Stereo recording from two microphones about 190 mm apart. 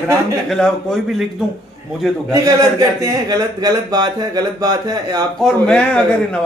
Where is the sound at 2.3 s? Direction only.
20° right (ahead or behind).